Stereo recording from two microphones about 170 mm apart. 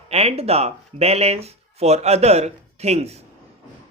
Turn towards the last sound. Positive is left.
turn(degrees=-40)  # may be behind; listen again after turning